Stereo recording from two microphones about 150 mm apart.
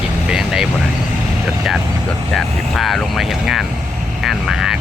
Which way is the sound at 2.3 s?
Centre (ahead or behind).